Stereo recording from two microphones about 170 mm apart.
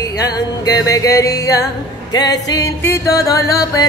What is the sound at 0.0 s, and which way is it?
Music, 20° left (ahead or behind).